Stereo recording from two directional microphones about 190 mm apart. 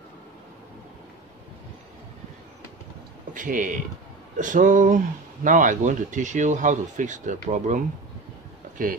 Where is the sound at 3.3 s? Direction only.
45° right (ahead or behind).